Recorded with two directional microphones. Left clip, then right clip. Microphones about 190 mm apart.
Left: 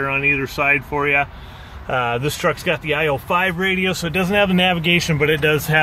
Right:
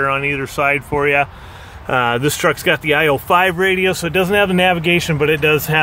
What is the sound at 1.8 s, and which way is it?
Speech, 40° right (ahead or behind).